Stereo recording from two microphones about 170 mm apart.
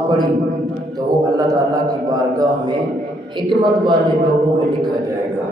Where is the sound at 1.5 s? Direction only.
20° right (ahead or behind).